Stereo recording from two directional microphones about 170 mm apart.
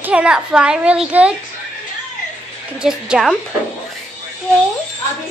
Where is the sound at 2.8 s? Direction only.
5° right (ahead or behind).